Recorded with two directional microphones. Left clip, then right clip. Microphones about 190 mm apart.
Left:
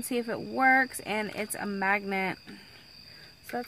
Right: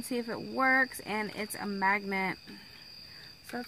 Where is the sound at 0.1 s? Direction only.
50° left (ahead or behind).